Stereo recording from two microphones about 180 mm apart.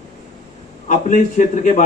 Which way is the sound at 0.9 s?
45° left (ahead or behind).